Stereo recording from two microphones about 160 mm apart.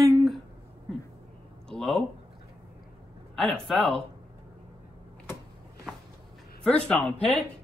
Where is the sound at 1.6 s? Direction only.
5° left (ahead or behind).